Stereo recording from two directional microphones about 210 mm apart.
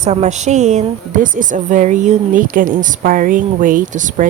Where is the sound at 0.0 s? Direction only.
35° right (ahead or behind).